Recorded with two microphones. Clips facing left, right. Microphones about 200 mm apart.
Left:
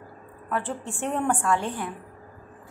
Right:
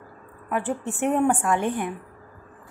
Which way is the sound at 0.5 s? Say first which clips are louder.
Right 3 dB; 15° right (ahead or behind).